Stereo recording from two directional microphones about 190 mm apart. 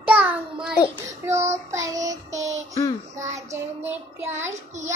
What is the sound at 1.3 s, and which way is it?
Child singing, 35° right (ahead or behind).